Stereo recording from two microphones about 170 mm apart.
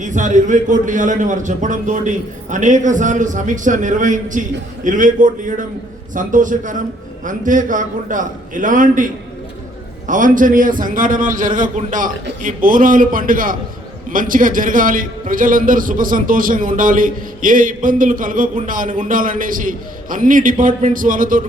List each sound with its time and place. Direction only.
0.0 s a man's voice: 50° right (ahead or behind)
10.1 s a man's voice: 50° right (ahead or behind)